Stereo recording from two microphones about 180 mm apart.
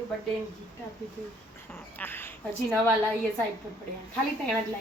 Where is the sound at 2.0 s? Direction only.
10° left (ahead or behind).